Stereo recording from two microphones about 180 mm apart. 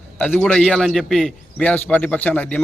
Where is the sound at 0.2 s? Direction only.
5° left (ahead or behind).